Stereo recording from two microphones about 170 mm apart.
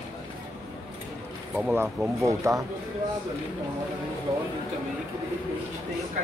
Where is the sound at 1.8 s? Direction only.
20° right (ahead or behind).